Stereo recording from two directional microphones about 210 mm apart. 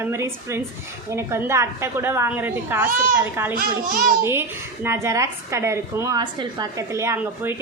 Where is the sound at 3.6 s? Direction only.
40° right (ahead or behind).